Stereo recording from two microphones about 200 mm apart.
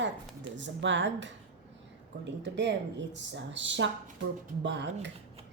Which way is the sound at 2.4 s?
60° right (ahead or behind).